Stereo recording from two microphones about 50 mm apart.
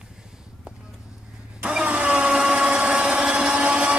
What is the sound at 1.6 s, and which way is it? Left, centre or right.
Blender, right.